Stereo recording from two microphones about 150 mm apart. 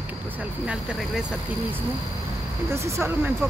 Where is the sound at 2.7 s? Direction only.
20° right (ahead or behind).